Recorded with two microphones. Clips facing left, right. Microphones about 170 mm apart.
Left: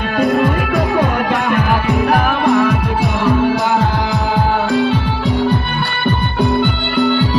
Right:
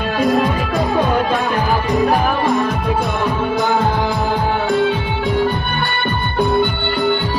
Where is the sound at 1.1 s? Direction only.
65° left (ahead or behind).